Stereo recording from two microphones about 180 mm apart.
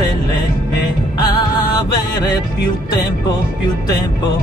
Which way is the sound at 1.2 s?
20° left (ahead or behind).